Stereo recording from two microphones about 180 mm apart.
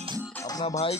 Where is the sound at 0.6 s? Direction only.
30° left (ahead or behind).